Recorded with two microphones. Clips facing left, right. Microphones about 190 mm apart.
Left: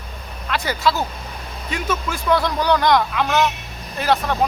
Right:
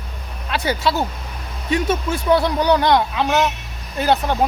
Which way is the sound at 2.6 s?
25° right (ahead or behind).